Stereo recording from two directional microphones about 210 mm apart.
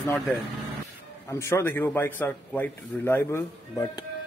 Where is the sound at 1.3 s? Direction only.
10° left (ahead or behind).